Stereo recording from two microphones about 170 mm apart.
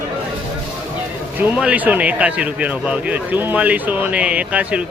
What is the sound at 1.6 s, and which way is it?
A man's voice, 10° right (ahead or behind).